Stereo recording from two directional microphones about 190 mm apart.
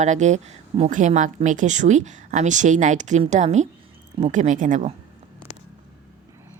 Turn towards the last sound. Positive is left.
turn(degrees=-40)  # may be behind; listen again after turning